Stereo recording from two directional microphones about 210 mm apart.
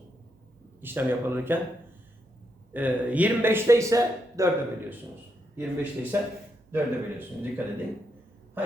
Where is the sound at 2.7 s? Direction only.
5° right (ahead or behind).